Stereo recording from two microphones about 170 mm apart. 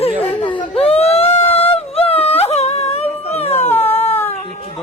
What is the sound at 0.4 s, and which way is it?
Baby cry, 30° left (ahead or behind).